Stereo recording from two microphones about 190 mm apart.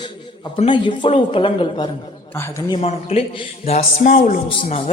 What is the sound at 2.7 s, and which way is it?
Speech, 30° left (ahead or behind).